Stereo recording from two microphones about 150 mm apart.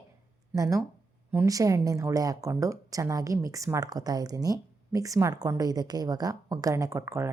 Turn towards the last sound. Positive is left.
turn(degrees=-20)  # may be behind; listen again after turning